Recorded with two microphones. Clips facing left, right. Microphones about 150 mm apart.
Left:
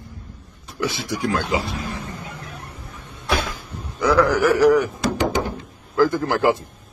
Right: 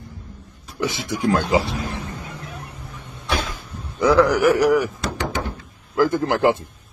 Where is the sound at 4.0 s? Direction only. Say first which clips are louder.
Right 2 dB; 20° right (ahead or behind).